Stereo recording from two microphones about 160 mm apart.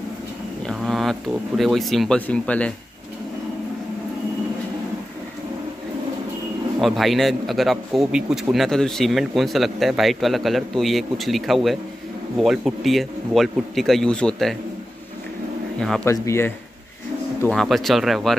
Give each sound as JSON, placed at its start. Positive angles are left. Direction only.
{"t": 0.7, "sound": "a sound", "side_deg": 0}
{"t": 1.6, "sound": "a man's voice", "side_deg": 0}
{"t": 6.8, "sound": "a man's voice", "side_deg": 0}
{"t": 16.0, "sound": "speech", "side_deg": 15}
{"t": 17.5, "sound": "a man's voice", "side_deg": 0}